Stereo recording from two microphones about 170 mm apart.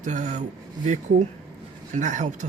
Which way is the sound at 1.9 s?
45° right (ahead or behind).